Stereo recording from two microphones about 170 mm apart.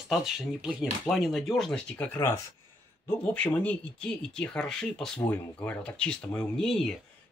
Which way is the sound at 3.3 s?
10° left (ahead or behind).